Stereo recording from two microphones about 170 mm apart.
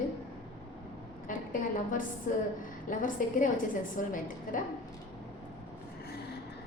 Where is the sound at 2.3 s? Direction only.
50° left (ahead or behind).